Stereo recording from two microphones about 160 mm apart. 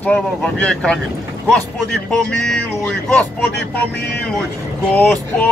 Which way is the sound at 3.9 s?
90° left.